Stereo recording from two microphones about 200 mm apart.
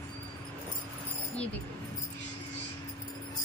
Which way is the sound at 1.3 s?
5° left (ahead or behind).